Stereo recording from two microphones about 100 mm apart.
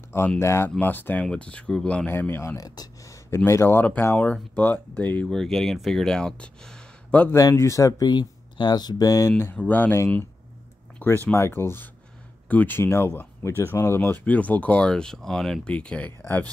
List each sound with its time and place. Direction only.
0.4 s speech: 25° left (ahead or behind)
0.7 s speech: 15° left (ahead or behind)
2.1 s speech: 25° left (ahead or behind)
2.5 s speech: 40° left (ahead or behind)
3.3 s speech: 25° left (ahead or behind)
5.3 s speech: 5° left (ahead or behind)
7.3 s speech: 30° left (ahead or behind)
9.4 s speech: 20° left (ahead or behind)